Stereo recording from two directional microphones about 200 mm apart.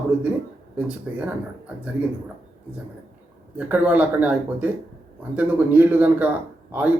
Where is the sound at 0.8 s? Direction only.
5° right (ahead or behind).